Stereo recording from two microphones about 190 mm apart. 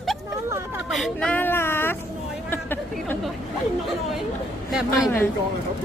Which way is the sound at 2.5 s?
10° left (ahead or behind).